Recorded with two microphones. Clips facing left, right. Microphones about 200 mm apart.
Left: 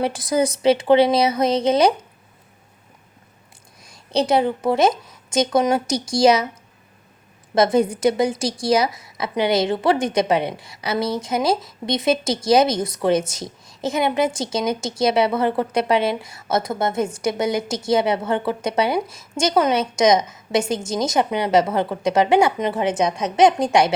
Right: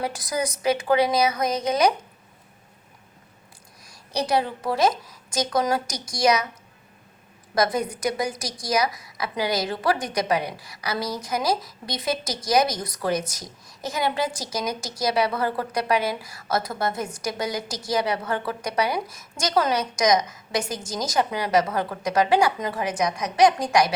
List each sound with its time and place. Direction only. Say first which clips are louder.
0.0 s a woman's voice: left 7 dB; 25° left (ahead or behind)
3.8 s a woman's voice: left 6 dB; 25° left (ahead or behind)
7.5 s a woman's voice: left 7 dB; 25° left (ahead or behind)